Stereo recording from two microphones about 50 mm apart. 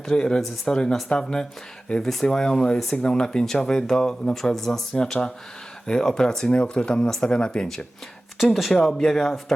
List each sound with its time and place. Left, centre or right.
0.0 s speech: centre
8.7 s speech: centre